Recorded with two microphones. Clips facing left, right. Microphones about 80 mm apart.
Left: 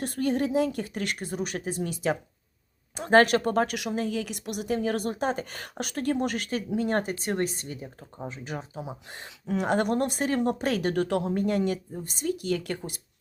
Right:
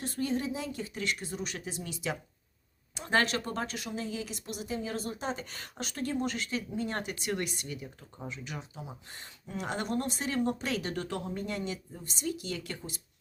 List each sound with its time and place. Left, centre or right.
0.0 s a woman's voice: left
9.2 s a woman's voice: left